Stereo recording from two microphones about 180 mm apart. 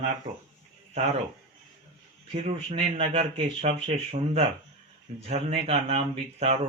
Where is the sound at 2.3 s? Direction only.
35° right (ahead or behind).